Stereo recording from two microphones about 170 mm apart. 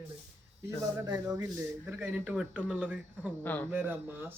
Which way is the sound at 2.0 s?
10° right (ahead or behind).